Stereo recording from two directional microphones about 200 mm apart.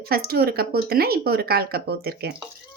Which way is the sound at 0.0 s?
50° right (ahead or behind).